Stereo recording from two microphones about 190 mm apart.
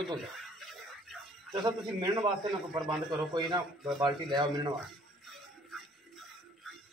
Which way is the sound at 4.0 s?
20° right (ahead or behind).